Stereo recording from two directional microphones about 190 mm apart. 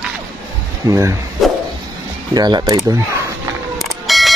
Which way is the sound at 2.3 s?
20° right (ahead or behind).